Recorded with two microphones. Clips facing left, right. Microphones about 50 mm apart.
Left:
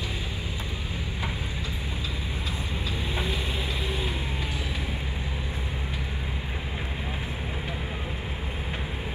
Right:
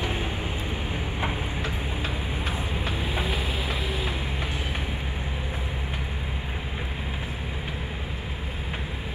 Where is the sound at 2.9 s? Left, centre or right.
Centre.